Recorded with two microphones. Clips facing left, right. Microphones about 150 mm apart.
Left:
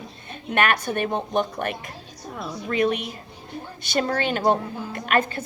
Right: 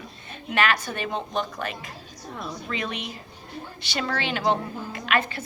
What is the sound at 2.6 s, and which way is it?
A woman's voice, 50° left (ahead or behind).